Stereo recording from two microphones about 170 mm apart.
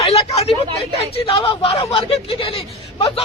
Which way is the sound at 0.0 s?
35° left (ahead or behind).